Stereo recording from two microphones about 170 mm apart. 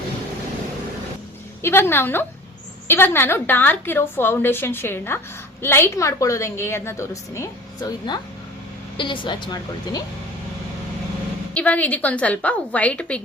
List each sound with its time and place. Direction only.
1.6 s a woman's voice: 15° left (ahead or behind)
11.5 s a woman's voice: 10° left (ahead or behind)